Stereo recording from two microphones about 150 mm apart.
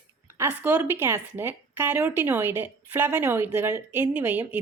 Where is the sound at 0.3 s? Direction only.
15° right (ahead or behind).